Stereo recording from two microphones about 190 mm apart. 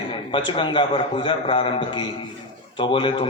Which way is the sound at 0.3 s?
25° left (ahead or behind).